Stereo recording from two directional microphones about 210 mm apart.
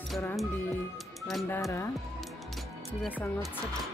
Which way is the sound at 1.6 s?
15° left (ahead or behind).